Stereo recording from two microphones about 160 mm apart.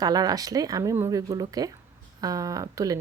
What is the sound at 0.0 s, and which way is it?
Speech, 25° right (ahead or behind).